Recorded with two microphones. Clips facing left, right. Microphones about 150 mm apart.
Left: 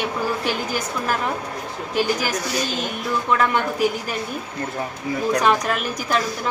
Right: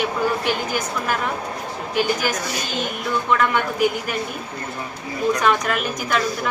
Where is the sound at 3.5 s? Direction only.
35° left (ahead or behind).